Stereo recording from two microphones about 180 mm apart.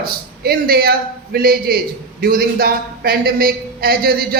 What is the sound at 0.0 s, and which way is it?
A man's voice, 55° right (ahead or behind).